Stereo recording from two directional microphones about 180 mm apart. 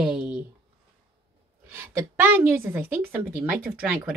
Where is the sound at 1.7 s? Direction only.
15° right (ahead or behind).